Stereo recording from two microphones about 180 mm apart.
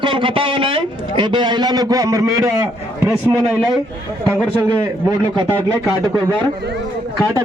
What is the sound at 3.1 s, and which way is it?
Speech, 5° right (ahead or behind).